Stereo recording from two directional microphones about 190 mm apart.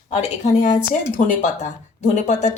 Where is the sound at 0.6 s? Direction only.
40° left (ahead or behind).